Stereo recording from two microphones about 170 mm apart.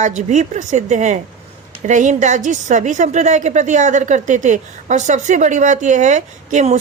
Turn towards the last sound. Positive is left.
turn(degrees=-45)  # may be behind; listen again after turning